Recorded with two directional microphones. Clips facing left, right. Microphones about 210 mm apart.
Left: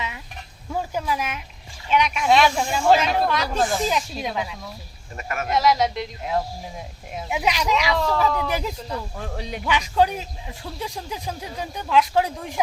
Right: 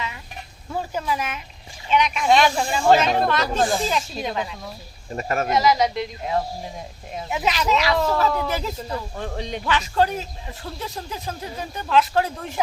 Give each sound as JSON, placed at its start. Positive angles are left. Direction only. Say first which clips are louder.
{"t": 0.7, "sound": "a sound", "louder": "even", "side_deg": 10}
{"t": 1.9, "sound": "a man's voice", "louder": "right 1 dB", "side_deg": 10}
{"t": 5.1, "sound": "speech", "louder": "right 6 dB", "side_deg": -35}
{"t": 5.5, "sound": "a man's voice", "louder": "left 1 dB", "side_deg": 0}
{"t": 7.9, "sound": "speech", "louder": "right 1 dB", "side_deg": -5}
{"t": 8.4, "sound": "a man's voice", "louder": "even", "side_deg": 15}
{"t": 8.9, "sound": "a man's voice", "louder": "right 2 dB", "side_deg": 5}